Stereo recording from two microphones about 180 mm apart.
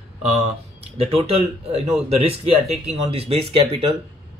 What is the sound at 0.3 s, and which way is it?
Speech, 30° right (ahead or behind).